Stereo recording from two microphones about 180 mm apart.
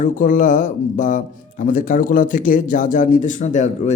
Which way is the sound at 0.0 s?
45° left (ahead or behind).